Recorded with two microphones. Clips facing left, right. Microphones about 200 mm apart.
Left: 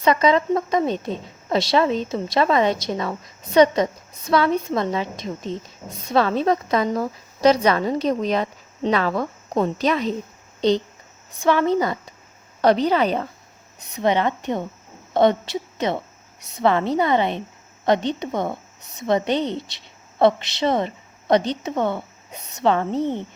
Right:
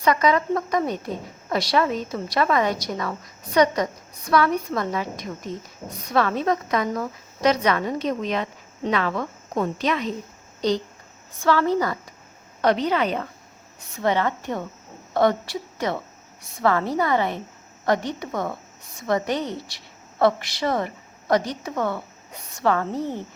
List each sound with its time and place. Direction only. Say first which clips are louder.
0.0 s a woman's voice: left 2 dB; 25° left (ahead or behind)
12.6 s a woman's voice: left 3 dB; 35° left (ahead or behind)
13.7 s a woman's voice: left 2 dB; 20° left (ahead or behind)